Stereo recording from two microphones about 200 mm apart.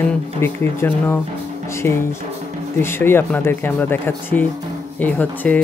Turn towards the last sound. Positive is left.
turn(degrees=10)  # may be behind; listen again after turning